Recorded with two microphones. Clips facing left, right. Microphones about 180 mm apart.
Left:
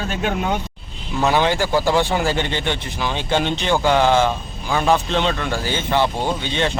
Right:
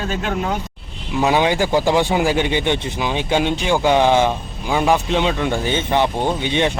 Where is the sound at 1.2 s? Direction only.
15° right (ahead or behind).